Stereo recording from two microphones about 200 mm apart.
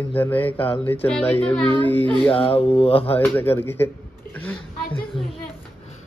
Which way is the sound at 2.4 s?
30° left (ahead or behind).